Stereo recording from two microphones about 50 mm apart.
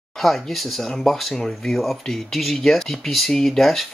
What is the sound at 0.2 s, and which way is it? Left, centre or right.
Speech, centre.